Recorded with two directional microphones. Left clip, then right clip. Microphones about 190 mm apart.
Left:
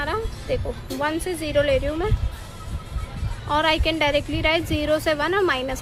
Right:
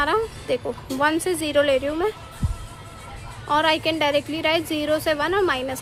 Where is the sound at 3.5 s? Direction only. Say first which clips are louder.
Right 1 dB; 15° right (ahead or behind).